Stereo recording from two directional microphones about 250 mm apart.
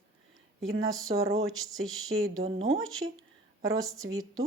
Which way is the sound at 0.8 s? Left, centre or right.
Centre.